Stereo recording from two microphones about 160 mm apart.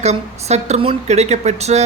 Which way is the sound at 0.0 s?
45° right (ahead or behind).